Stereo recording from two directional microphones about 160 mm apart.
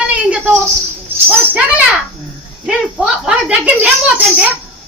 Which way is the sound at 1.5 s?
10° right (ahead or behind).